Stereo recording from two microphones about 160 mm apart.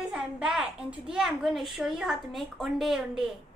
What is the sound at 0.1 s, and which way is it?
Music, 5° right (ahead or behind).